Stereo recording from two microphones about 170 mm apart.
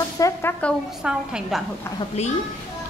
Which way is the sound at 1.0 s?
5° right (ahead or behind).